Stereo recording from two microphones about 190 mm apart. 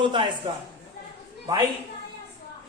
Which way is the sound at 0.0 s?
25° right (ahead or behind).